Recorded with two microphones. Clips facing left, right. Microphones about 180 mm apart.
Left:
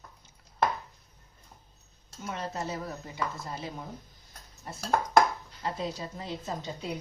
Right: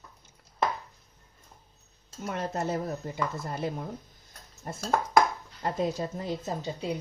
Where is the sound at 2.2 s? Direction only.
55° right (ahead or behind).